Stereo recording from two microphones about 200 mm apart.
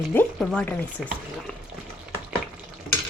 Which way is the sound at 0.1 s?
5° left (ahead or behind).